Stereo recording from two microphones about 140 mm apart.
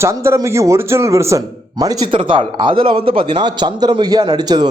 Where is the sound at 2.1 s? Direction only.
35° right (ahead or behind).